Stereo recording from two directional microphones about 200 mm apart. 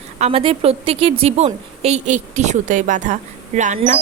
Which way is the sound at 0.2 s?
30° right (ahead or behind).